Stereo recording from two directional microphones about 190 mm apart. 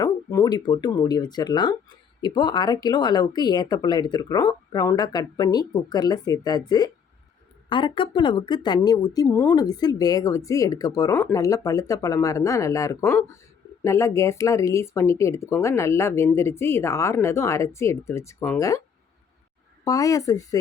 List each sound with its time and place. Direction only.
0.0 s a woman's voice: 15° left (ahead or behind)
19.8 s a woman's voice: 20° left (ahead or behind)